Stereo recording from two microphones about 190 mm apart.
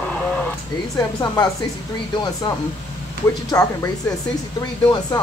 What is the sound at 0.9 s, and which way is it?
Speech, 20° left (ahead or behind).